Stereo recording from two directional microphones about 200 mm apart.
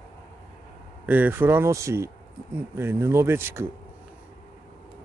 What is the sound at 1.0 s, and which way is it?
Speech, 10° right (ahead or behind).